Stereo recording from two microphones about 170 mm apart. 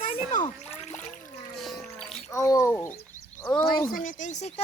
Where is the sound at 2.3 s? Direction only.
20° left (ahead or behind).